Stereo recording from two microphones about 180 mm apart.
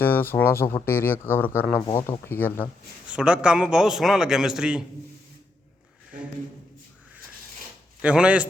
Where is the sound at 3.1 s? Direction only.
5° right (ahead or behind).